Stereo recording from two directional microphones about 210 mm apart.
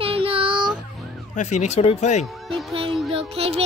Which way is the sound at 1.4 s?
35° left (ahead or behind).